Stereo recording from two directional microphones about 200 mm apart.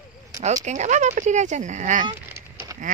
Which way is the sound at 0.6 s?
35° right (ahead or behind).